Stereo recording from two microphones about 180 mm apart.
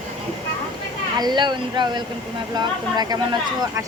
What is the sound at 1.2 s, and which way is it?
Speech, 25° right (ahead or behind).